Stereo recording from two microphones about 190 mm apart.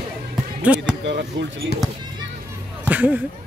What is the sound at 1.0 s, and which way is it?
Speech, 75° right (ahead or behind).